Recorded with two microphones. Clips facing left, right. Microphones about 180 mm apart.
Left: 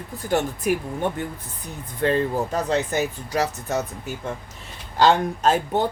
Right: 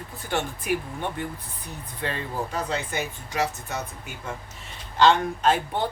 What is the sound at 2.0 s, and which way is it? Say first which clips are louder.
Speech: left 9 dB; 50° left (ahead or behind).